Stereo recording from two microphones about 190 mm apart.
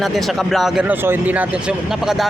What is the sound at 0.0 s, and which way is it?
Speech, centre (ahead or behind).